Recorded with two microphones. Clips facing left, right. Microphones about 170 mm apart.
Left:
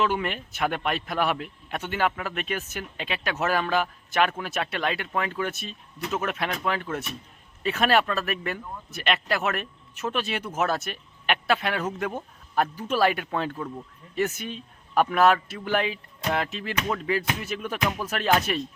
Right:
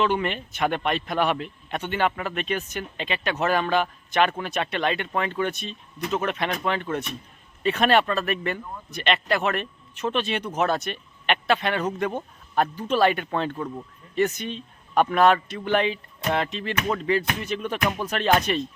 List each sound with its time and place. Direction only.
0.0 s speech: 5° left (ahead or behind)